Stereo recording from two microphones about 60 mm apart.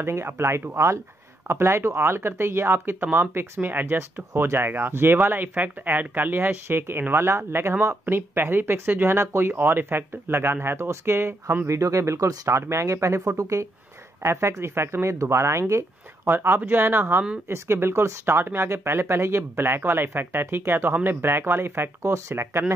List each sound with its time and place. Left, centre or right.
0.0 s speech: right
11.6 s speech: right
14.2 s speech: right
16.3 s speech: right